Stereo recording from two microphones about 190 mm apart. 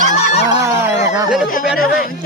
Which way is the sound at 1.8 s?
50° left (ahead or behind).